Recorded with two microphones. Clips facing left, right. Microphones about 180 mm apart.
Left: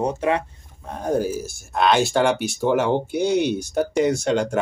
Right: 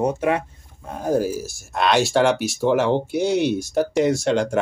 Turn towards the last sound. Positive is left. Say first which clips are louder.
# right 1 dB
turn(degrees=0)  # may be behind; listen again after turning